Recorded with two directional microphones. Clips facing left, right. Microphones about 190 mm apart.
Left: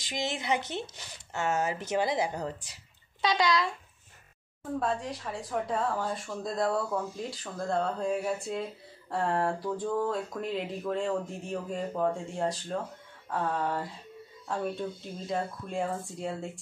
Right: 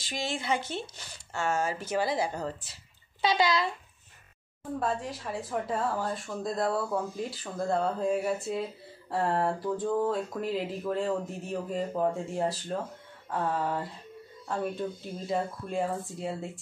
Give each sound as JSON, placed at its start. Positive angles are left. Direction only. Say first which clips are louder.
{"t": 0.0, "sound": "speech", "louder": "even", "side_deg": 20}
{"t": 3.2, "sound": "speech", "louder": "right 1 dB", "side_deg": -5}
{"t": 4.7, "sound": "speech", "louder": "even", "side_deg": 0}